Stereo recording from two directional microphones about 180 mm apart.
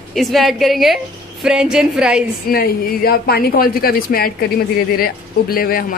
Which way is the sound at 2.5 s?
55° left (ahead or behind).